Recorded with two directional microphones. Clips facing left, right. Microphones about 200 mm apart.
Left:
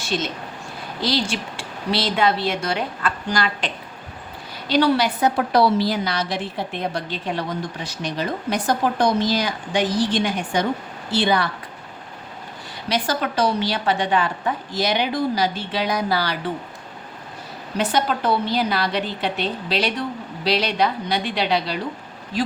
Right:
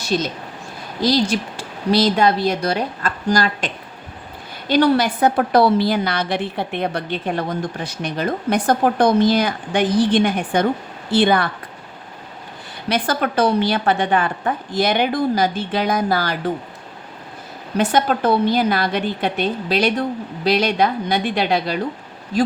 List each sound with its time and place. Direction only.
0.0 s a woman's voice: 40° right (ahead or behind)
4.7 s a woman's voice: 50° right (ahead or behind)
12.9 s a woman's voice: 55° right (ahead or behind)
17.7 s a woman's voice: 50° right (ahead or behind)